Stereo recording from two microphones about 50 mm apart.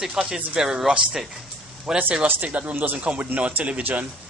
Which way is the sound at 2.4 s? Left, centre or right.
Right.